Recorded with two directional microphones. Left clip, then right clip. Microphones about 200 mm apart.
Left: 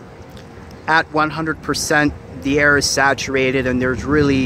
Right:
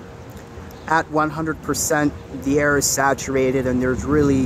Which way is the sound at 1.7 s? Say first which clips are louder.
Left 3 dB; centre (ahead or behind).